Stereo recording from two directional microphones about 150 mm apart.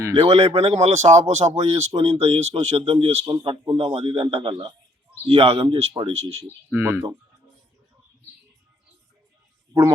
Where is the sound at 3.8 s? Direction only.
45° right (ahead or behind).